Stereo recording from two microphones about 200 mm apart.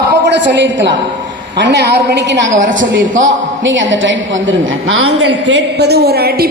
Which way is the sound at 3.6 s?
70° right (ahead or behind).